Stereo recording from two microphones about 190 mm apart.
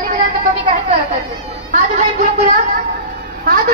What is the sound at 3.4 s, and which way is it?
Vehicle, 50° right (ahead or behind).